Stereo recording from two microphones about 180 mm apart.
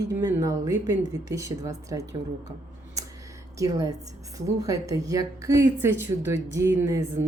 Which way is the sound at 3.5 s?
20° right (ahead or behind).